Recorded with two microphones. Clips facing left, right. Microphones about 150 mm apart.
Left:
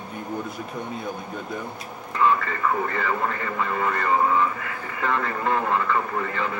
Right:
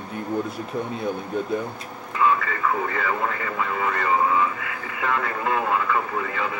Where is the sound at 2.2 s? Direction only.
5° right (ahead or behind).